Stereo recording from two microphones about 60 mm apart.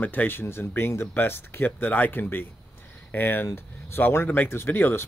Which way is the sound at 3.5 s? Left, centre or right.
Left.